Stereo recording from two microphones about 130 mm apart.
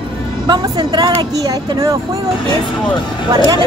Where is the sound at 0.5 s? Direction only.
35° right (ahead or behind).